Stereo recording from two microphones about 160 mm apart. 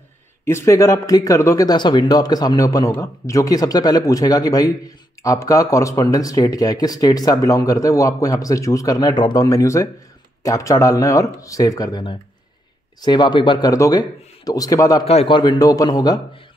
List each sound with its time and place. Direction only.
0.5 s speech: 15° left (ahead or behind)
15.0 s speech: 35° left (ahead or behind)